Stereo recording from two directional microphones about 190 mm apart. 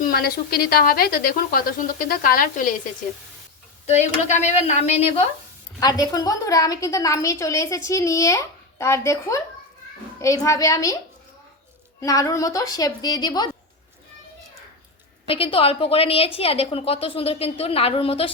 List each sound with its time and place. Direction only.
0.0 s a woman's voice: 55° left (ahead or behind)
3.8 s a woman's voice: 35° left (ahead or behind)
5.8 s a woman's voice: 20° left (ahead or behind)
11.9 s a woman's voice: 15° left (ahead or behind)
15.3 s a woman's voice: 30° left (ahead or behind)